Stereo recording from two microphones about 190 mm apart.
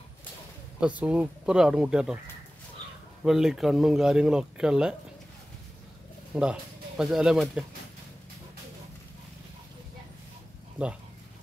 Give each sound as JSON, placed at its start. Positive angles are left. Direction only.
{"t": 0.7, "sound": "speech", "side_deg": -5}
{"t": 3.3, "sound": "speech", "side_deg": 0}
{"t": 6.3, "sound": "speech", "side_deg": -5}